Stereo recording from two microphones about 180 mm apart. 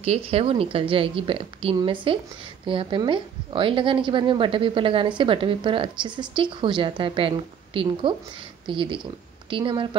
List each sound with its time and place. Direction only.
0.0 s a woman's voice: 35° right (ahead or behind)